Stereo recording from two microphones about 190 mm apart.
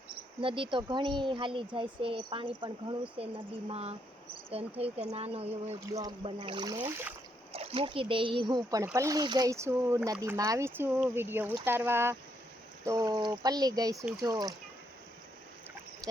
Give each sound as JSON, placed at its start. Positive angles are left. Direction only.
{"t": 0.4, "sound": "a woman's voice", "side_deg": -25}
{"t": 5.9, "sound": "speech", "side_deg": -20}
{"t": 7.5, "sound": "speech", "side_deg": -30}